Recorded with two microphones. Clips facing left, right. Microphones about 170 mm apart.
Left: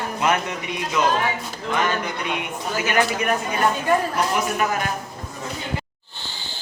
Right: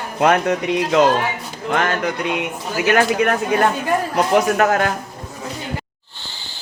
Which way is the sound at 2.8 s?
70° right (ahead or behind).